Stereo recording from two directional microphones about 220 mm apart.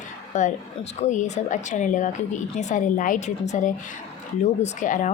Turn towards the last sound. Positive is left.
turn(degrees=35)  # may be behind; listen again after turning